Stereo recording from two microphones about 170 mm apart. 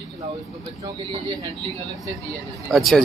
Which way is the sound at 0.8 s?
20° right (ahead or behind).